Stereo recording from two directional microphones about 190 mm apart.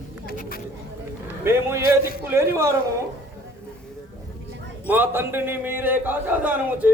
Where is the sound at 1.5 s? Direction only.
15° right (ahead or behind).